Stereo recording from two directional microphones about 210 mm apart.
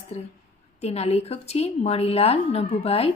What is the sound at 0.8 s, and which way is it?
A woman's voice, 30° left (ahead or behind).